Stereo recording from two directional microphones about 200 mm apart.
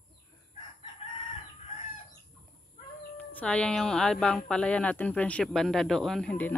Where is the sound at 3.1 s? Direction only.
5° left (ahead or behind).